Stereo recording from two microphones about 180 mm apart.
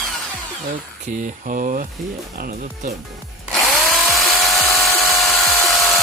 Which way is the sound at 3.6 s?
Centre (ahead or behind).